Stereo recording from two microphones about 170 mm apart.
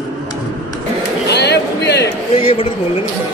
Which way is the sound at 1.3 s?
85° left.